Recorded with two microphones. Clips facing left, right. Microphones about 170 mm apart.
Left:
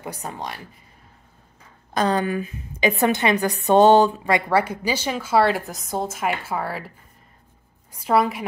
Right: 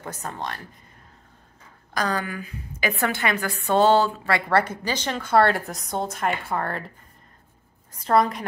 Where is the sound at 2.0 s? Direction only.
25° left (ahead or behind); by 6.8 s 5° left (ahead or behind).